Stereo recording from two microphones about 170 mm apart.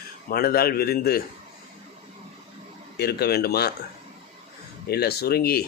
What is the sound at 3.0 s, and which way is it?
Speech, 70° left (ahead or behind).